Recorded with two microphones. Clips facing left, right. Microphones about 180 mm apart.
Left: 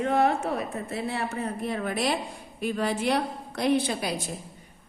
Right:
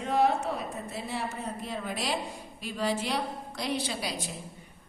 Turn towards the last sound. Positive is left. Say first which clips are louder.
# left 6 dB
turn(degrees=55)  # may be behind; listen again after turning